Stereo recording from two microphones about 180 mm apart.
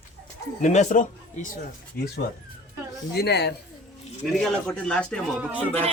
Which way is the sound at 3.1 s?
65° left (ahead or behind).